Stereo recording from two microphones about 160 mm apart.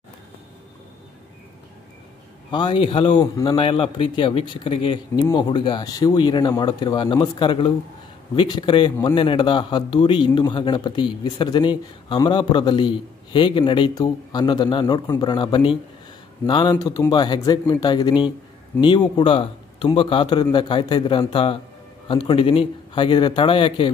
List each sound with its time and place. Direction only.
2.5 s a man's voice: 30° left (ahead or behind)